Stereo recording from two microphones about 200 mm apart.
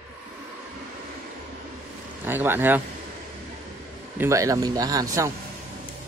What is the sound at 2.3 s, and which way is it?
Speech, 10° right (ahead or behind).